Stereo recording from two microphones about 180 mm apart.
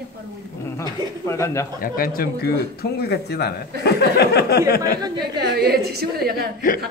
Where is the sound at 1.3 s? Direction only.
15° left (ahead or behind).